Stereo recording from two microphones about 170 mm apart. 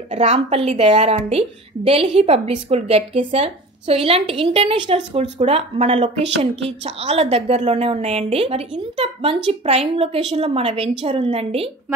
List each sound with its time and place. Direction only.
0.1 s a woman's voice: 40° right (ahead or behind)